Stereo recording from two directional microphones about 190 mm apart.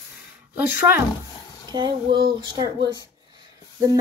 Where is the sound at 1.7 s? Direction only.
25° right (ahead or behind).